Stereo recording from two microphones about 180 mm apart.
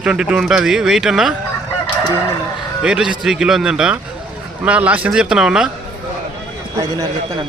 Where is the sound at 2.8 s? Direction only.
5° right (ahead or behind).